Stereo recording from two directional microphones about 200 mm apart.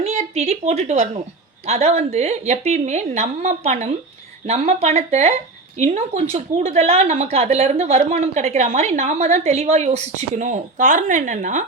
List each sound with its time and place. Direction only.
0.0 s a woman's voice: 30° right (ahead or behind)